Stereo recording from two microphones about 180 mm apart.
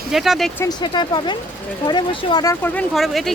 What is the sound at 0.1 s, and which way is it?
Speech, centre (ahead or behind).